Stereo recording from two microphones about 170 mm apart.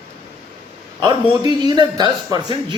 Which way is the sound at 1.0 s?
25° right (ahead or behind).